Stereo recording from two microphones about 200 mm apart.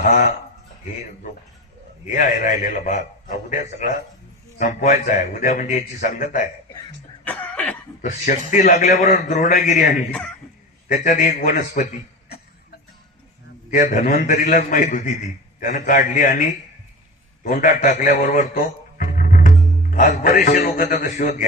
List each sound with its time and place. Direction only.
0.0 s a man's voice: 40° left (ahead or behind)
2.0 s a man's voice: 40° left (ahead or behind)
7.3 s cough: 5° left (ahead or behind)
8.0 s a man's voice: 40° left (ahead or behind)
10.1 s speech: 5° left (ahead or behind)
10.8 s a man's voice: 40° left (ahead or behind)
13.7 s a man's voice: 40° left (ahead or behind)